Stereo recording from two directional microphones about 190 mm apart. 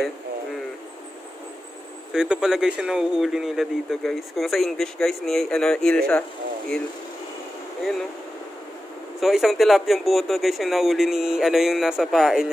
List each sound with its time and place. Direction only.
2.1 s speech: 5° right (ahead or behind)
9.2 s speech: centre (ahead or behind)